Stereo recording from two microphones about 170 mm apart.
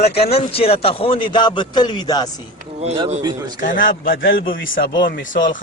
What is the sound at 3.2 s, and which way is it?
Speech, 20° right (ahead or behind).